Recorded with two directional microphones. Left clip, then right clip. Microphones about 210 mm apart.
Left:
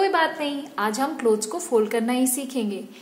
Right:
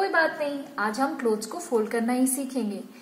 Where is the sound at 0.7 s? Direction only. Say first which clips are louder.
Left 2 dB; 20° left (ahead or behind).